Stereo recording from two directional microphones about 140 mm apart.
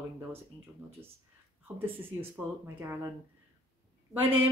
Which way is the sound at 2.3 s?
15° right (ahead or behind).